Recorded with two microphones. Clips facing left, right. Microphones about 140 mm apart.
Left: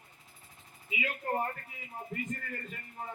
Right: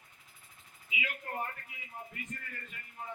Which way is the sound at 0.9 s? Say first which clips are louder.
Left 6 dB; 40° left (ahead or behind).